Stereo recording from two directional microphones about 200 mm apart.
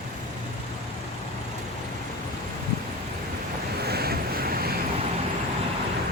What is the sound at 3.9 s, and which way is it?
Vehicle, 50° right (ahead or behind).